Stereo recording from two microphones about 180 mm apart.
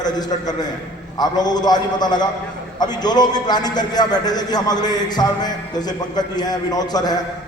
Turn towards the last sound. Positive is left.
turn(degrees=20)  # may be behind; listen again after turning